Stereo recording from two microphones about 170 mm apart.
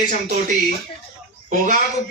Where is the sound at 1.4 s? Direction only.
50° right (ahead or behind).